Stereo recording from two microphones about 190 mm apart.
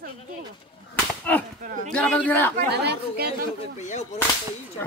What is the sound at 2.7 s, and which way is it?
Speech, 60° right (ahead or behind).